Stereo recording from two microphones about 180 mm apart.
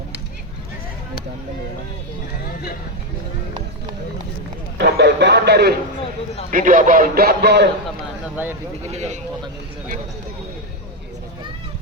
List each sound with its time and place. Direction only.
4.8 s speech: 65° right (ahead or behind)
6.5 s speech: 50° right (ahead or behind); by 7.7 s 70° right (ahead or behind)
8.9 s a man's voice: 40° right (ahead or behind)